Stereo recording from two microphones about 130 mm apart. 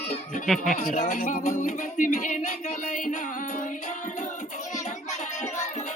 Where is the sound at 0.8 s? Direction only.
75° left (ahead or behind).